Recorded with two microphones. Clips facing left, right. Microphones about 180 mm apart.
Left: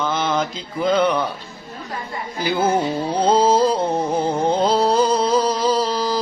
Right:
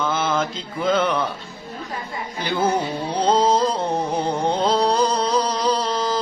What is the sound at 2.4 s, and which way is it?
Music, 5° left (ahead or behind).